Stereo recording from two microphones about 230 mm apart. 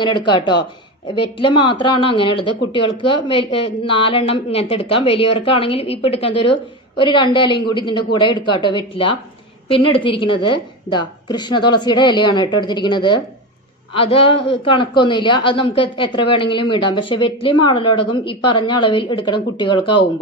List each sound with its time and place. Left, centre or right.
0.0 s speech: centre